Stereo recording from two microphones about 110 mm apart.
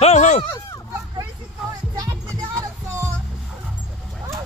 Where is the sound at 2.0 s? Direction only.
30° right (ahead or behind).